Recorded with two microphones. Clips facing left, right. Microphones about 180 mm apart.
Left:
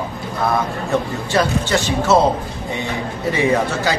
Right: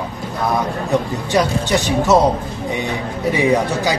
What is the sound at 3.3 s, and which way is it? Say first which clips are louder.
Speech: right 1 dB; 15° right (ahead or behind).